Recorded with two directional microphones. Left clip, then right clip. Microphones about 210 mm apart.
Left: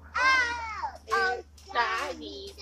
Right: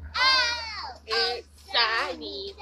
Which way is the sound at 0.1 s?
50° right (ahead or behind).